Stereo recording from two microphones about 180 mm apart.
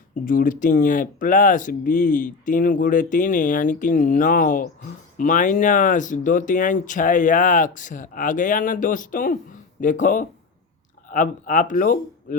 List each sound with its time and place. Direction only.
0.3 s speech: 50° left (ahead or behind)